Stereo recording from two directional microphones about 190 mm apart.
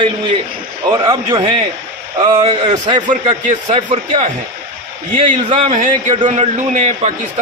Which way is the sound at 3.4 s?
40° right (ahead or behind).